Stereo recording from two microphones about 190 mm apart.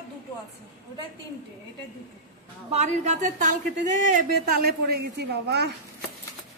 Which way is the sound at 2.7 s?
35° right (ahead or behind).